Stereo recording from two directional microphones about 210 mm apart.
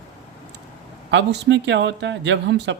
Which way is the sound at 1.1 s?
55° right (ahead or behind).